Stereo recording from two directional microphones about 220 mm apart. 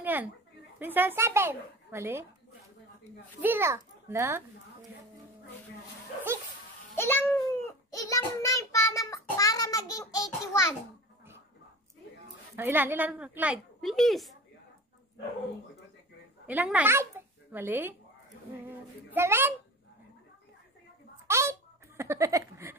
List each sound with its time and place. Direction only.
0.0 s a sound: 10° right (ahead or behind)
0.7 s speech: 10° right (ahead or behind)
3.3 s speech: 10° right (ahead or behind)
7.0 s a child's voice: 10° left (ahead or behind)
7.9 s child singing: 15° left (ahead or behind)
12.5 s a woman's voice: 10° right (ahead or behind)
16.4 s speech: 5° right (ahead or behind)
19.1 s speech: 10° right (ahead or behind)
21.3 s a sound: 10° right (ahead or behind)